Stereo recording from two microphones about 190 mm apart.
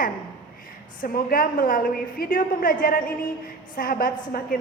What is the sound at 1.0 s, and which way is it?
A woman's voice, 50° left (ahead or behind).